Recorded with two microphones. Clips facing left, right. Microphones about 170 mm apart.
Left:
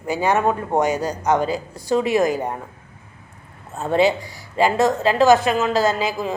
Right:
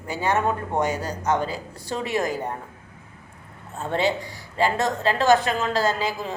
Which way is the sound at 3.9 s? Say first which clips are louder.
Left 6 dB; 10° left (ahead or behind).